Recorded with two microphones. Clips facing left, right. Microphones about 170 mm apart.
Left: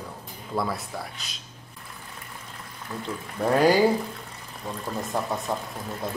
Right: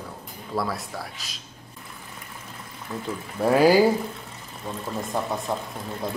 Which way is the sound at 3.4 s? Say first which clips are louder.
Right 2 dB; 5° right (ahead or behind).